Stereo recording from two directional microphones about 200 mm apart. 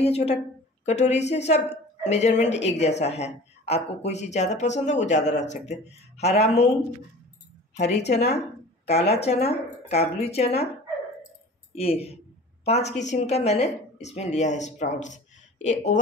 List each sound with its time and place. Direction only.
0.0 s a woman's voice: 30° left (ahead or behind)
7.7 s a woman's voice: 35° left (ahead or behind)
11.7 s a woman's voice: 30° left (ahead or behind)